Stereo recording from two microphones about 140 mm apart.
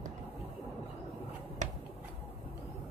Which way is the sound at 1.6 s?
60° right (ahead or behind).